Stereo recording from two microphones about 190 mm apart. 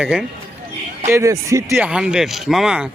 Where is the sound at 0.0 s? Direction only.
5° right (ahead or behind).